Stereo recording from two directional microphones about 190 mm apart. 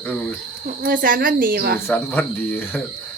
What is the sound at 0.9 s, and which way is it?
Speech, 45° right (ahead or behind).